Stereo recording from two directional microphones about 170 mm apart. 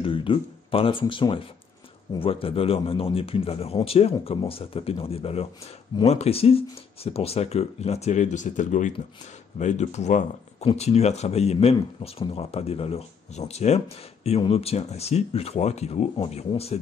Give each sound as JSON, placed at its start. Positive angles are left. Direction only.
{"t": 0.0, "sound": "speech", "side_deg": 30}